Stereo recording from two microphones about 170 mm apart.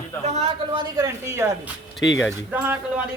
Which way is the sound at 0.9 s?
15° right (ahead or behind).